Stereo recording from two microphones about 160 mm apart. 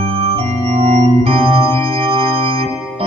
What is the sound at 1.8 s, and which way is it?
Music, 35° right (ahead or behind).